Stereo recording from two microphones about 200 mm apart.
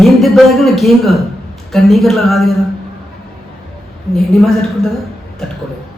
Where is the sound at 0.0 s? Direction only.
Centre (ahead or behind).